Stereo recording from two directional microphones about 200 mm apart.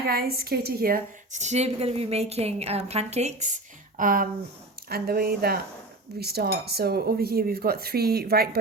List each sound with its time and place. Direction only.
0.0 s a woman's voice: 50° right (ahead or behind)